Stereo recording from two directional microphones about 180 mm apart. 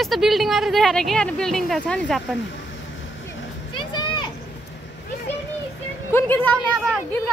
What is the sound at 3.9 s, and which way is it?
Vehicle, 25° left (ahead or behind).